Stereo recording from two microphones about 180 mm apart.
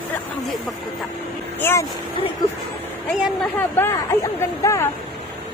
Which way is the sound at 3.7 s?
15° left (ahead or behind).